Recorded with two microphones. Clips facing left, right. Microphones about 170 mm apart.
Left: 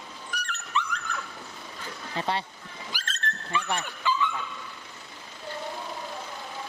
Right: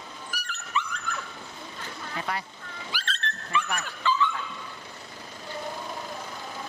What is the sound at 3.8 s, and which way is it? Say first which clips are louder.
Speech: right 1 dB; 15° left (ahead or behind).